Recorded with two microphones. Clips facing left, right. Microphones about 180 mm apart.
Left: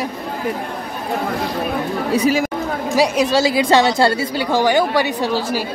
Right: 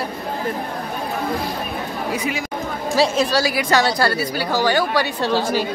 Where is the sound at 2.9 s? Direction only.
15° left (ahead or behind).